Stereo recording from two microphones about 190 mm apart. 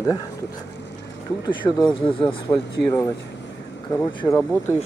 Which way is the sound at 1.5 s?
25° left (ahead or behind).